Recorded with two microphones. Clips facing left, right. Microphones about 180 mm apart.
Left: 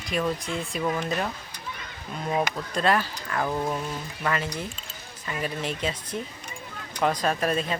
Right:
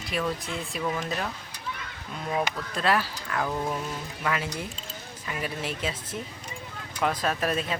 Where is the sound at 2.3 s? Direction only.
20° left (ahead or behind).